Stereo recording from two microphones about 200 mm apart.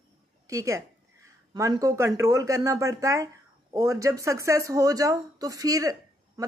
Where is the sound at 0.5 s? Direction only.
15° right (ahead or behind).